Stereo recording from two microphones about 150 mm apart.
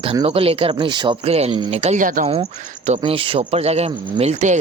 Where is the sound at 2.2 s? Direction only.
40° right (ahead or behind).